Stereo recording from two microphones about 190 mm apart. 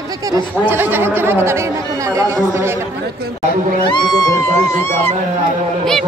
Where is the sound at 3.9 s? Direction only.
15° left (ahead or behind).